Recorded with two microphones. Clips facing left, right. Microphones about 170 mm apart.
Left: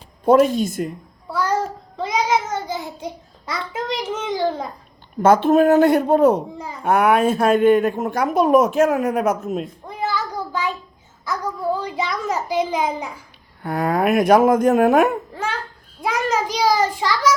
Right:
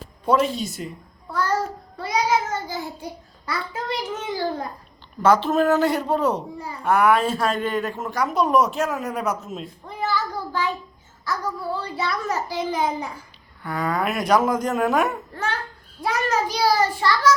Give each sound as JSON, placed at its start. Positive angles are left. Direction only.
{"t": 0.3, "sound": "speech", "side_deg": 50}
{"t": 1.3, "sound": "child singing", "side_deg": 15}
{"t": 2.0, "sound": "child singing", "side_deg": 90}
{"t": 2.3, "sound": "child singing", "side_deg": 20}
{"t": 4.3, "sound": "a child's voice", "side_deg": 20}
{"t": 5.2, "sound": "speech", "side_deg": 50}
{"t": 9.9, "sound": "a sound", "side_deg": 15}
{"t": 11.3, "sound": "a child's voice", "side_deg": 15}
{"t": 13.6, "sound": "speech", "side_deg": 50}
{"t": 16.0, "sound": "a child's voice", "side_deg": 15}